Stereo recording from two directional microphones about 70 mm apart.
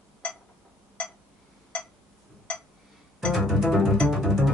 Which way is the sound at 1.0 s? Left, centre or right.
Centre.